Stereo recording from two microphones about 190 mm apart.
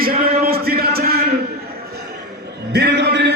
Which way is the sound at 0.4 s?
55° right (ahead or behind).